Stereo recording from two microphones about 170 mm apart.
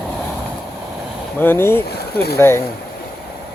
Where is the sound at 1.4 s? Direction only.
15° left (ahead or behind).